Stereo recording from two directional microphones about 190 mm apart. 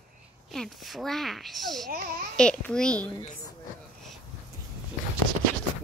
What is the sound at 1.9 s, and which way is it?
Speech, 50° right (ahead or behind).